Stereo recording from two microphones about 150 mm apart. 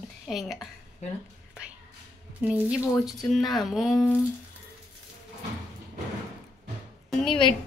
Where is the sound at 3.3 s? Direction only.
Centre (ahead or behind).